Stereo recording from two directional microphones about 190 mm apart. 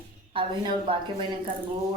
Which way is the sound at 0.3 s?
25° right (ahead or behind).